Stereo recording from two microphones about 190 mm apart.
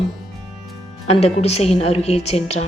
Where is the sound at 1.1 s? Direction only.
35° left (ahead or behind).